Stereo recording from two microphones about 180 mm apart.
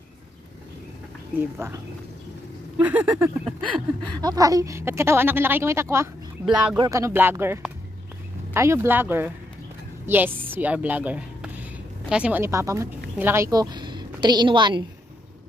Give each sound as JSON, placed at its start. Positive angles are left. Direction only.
{"t": 2.8, "sound": "a woman's voice", "side_deg": -10}
{"t": 4.2, "sound": "a woman's voice", "side_deg": -20}
{"t": 6.8, "sound": "a woman's voice", "side_deg": -15}